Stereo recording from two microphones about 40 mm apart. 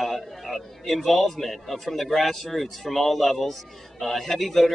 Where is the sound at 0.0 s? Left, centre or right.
Centre.